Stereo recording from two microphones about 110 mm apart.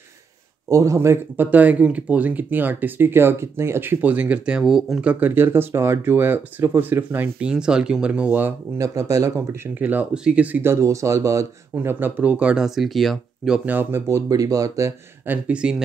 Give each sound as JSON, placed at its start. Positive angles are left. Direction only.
{"t": 0.7, "sound": "speech", "side_deg": -30}
{"t": 5.2, "sound": "speech", "side_deg": -20}
{"t": 8.7, "sound": "speech", "side_deg": -30}
{"t": 9.8, "sound": "speech", "side_deg": -15}
{"t": 13.7, "sound": "speech", "side_deg": -20}
{"t": 15.2, "sound": "speech", "side_deg": -15}